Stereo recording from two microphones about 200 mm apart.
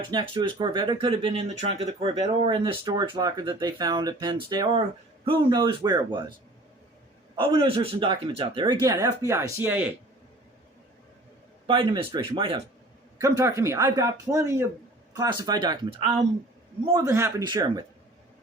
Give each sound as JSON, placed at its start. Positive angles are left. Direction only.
{"t": 0.1, "sound": "speech", "side_deg": -20}
{"t": 7.3, "sound": "speech", "side_deg": -25}
{"t": 11.6, "sound": "speech", "side_deg": -25}
{"t": 13.1, "sound": "speech", "side_deg": -15}